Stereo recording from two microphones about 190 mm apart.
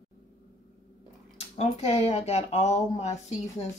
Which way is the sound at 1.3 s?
35° left (ahead or behind).